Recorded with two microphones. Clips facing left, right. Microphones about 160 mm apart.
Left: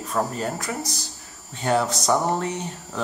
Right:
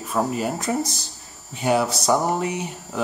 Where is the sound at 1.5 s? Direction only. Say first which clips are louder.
Right 2 dB; 10° right (ahead or behind).